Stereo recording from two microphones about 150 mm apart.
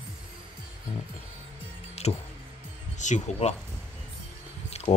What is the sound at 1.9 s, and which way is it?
Music, 45° left (ahead or behind).